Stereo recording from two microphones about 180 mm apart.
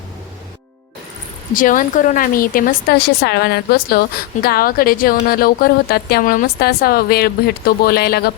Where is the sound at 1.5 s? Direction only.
45° left (ahead or behind).